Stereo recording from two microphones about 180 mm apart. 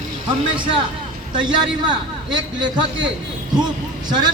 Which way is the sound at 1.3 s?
25° right (ahead or behind).